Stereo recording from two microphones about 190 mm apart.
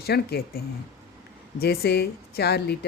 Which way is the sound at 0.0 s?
55° left (ahead or behind).